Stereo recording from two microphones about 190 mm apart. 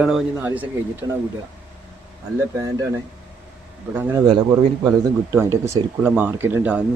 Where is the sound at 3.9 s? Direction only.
10° right (ahead or behind).